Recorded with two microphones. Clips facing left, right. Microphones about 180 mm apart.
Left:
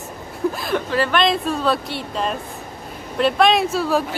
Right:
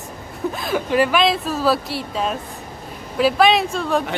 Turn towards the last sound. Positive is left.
turn(degrees=5)  # may be behind; listen again after turning